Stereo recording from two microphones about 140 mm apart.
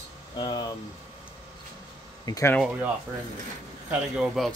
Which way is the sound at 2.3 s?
25° left (ahead or behind).